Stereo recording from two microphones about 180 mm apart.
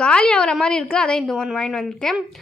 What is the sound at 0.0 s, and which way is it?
A woman's voice, 5° left (ahead or behind).